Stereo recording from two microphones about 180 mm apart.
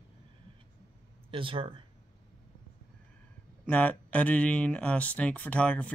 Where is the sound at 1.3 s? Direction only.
30° right (ahead or behind).